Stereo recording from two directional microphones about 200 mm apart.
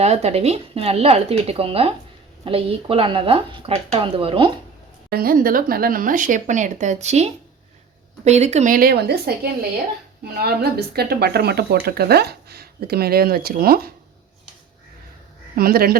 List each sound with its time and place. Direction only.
0.0 s speech: 35° right (ahead or behind)
5.1 s speech: 45° right (ahead or behind)
15.5 s speech: 50° right (ahead or behind)